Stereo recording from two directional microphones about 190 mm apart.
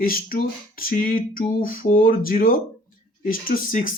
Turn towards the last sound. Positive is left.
turn(degrees=45)  # may be behind; listen again after turning